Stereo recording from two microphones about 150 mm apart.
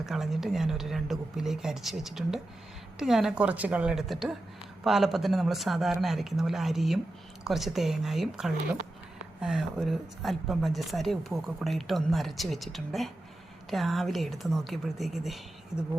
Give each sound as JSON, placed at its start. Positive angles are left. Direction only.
{"t": 0.0, "sound": "speech", "side_deg": 0}